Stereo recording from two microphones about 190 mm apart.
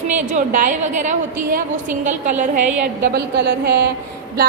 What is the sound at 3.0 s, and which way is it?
Speech, 60° right (ahead or behind).